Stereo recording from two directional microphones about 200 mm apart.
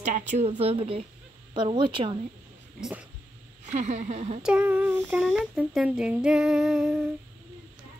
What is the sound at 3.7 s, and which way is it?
Speech, 35° right (ahead or behind).